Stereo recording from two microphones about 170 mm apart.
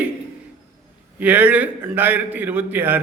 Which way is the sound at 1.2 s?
10° right (ahead or behind).